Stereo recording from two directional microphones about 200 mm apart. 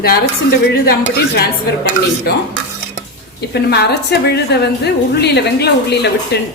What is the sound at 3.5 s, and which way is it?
A woman's voice, 55° left (ahead or behind).